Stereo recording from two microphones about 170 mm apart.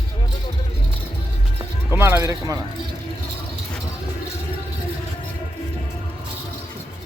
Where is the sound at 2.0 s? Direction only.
15° right (ahead or behind).